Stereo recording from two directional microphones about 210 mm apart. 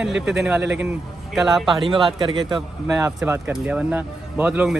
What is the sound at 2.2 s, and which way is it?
Speech, 20° right (ahead or behind).